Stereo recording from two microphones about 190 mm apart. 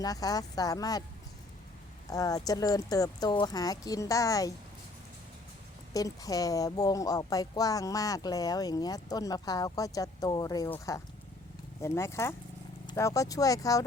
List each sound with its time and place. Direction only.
0.0 s a woman's voice: 20° left (ahead or behind)
2.0 s a woman's voice: 20° left (ahead or behind)
5.9 s a woman's voice: 20° left (ahead or behind)